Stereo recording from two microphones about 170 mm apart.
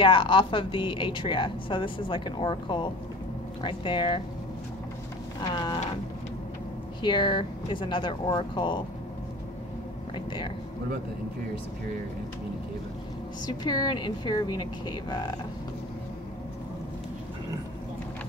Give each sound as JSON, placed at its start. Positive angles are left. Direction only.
{"t": 0.0, "sound": "a woman's voice", "side_deg": 30}
{"t": 5.4, "sound": "a woman's voice", "side_deg": 25}
{"t": 7.0, "sound": "a woman's voice", "side_deg": 25}
{"t": 10.1, "sound": "speech", "side_deg": 30}
{"t": 13.5, "sound": "a woman's voice", "side_deg": 25}